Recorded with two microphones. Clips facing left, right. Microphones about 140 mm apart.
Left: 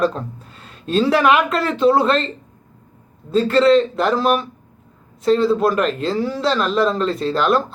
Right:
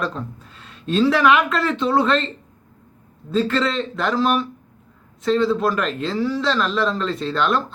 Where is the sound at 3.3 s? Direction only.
Centre (ahead or behind).